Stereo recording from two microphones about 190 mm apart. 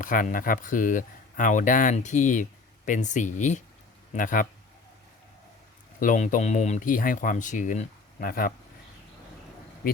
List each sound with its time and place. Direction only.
0.0 s speech: 45° left (ahead or behind)
6.0 s speech: 40° left (ahead or behind)